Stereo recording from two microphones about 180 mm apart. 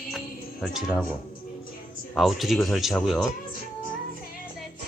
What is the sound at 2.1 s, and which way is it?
Speech, centre (ahead or behind).